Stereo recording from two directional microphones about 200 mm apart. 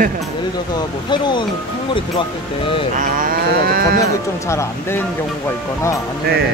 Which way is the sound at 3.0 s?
45° right (ahead or behind).